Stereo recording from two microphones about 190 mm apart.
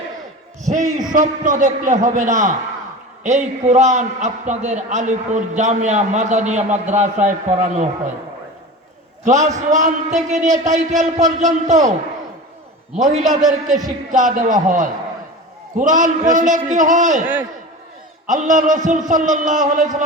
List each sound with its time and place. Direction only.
0.6 s a man's voice: 40° right (ahead or behind)
9.2 s a man's voice: 40° right (ahead or behind)
13.0 s a man's voice: 40° right (ahead or behind)
18.3 s a man's voice: 40° right (ahead or behind)